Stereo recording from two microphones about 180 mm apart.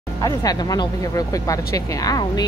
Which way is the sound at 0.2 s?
20° left (ahead or behind).